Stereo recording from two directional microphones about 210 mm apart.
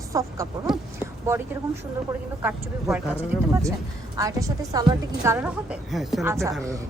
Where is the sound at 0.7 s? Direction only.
Centre (ahead or behind).